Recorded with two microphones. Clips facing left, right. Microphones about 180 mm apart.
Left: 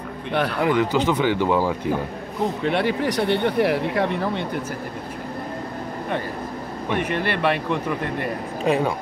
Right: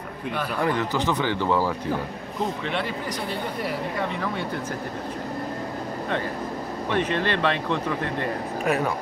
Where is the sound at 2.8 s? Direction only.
70° left (ahead or behind).